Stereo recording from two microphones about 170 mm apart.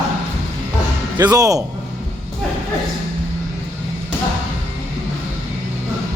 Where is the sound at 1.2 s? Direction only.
20° right (ahead or behind).